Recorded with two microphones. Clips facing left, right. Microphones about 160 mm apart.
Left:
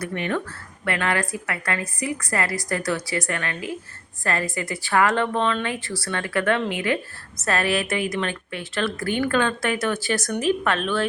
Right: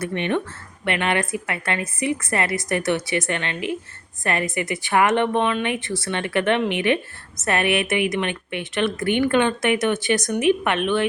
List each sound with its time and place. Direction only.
0.0 s a woman's voice: 25° right (ahead or behind)